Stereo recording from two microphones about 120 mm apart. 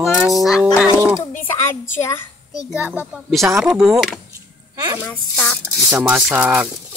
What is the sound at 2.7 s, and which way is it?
Speech, 10° right (ahead or behind).